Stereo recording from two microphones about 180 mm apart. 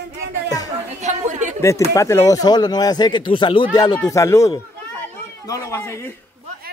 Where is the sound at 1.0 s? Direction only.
40° right (ahead or behind).